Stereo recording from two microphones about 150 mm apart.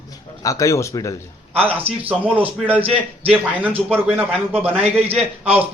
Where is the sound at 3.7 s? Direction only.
5° right (ahead or behind).